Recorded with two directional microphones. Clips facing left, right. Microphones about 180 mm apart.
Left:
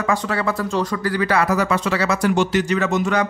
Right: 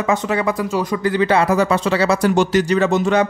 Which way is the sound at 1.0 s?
25° right (ahead or behind).